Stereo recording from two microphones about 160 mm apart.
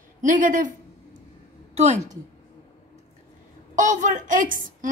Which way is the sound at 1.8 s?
45° right (ahead or behind).